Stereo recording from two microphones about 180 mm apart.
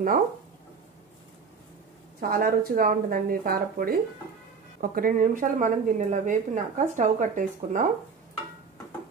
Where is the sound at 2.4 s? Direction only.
55° right (ahead or behind).